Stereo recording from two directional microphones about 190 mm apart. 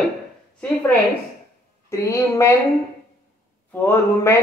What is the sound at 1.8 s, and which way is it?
Speech, 15° left (ahead or behind).